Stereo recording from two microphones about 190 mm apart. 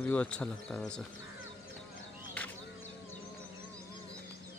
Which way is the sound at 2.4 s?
10° left (ahead or behind).